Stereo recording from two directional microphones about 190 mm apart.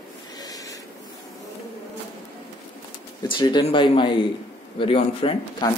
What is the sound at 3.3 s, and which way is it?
A man's voice, 25° left (ahead or behind).